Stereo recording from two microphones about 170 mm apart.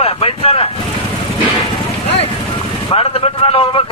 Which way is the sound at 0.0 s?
30° left (ahead or behind).